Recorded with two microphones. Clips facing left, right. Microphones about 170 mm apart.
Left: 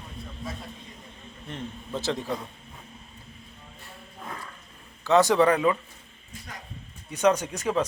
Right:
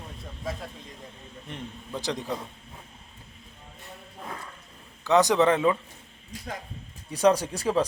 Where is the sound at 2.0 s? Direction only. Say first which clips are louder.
Left 2 dB; 15° right (ahead or behind).